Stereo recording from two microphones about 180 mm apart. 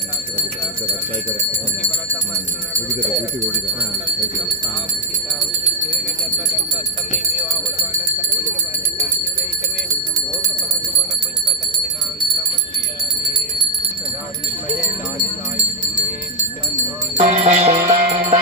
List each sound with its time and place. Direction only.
17.2 s music: 35° right (ahead or behind)